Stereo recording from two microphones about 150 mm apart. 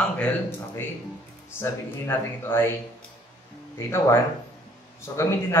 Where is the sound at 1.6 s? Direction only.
15° left (ahead or behind).